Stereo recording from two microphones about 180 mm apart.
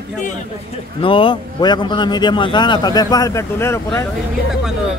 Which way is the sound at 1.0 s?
30° left (ahead or behind).